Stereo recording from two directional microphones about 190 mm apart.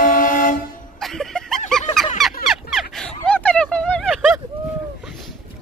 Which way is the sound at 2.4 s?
Centre (ahead or behind).